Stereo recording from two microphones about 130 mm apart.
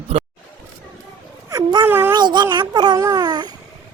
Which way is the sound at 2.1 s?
35° right (ahead or behind).